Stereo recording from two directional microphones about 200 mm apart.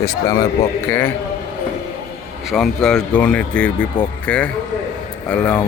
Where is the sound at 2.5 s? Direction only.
5° left (ahead or behind).